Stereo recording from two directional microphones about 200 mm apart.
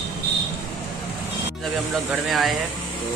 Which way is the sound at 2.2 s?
Centre (ahead or behind).